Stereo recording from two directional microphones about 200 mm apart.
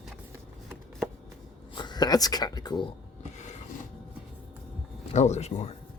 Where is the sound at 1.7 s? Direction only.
20° left (ahead or behind).